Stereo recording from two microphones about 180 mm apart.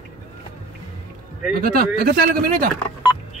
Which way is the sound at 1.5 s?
55° right (ahead or behind).